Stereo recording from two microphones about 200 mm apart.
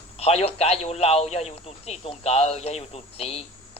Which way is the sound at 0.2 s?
30° left (ahead or behind).